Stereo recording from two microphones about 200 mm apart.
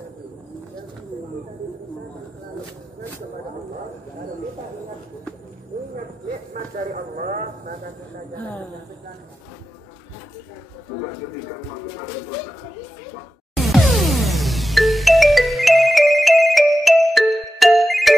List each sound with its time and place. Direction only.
6.7 s speech: 40° right (ahead or behind)
13.6 s music: centre (ahead or behind)